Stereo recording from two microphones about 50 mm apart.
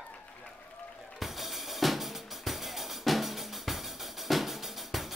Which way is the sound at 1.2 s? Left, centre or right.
Centre.